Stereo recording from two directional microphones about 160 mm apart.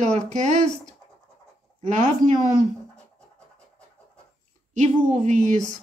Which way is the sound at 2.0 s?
50° right (ahead or behind).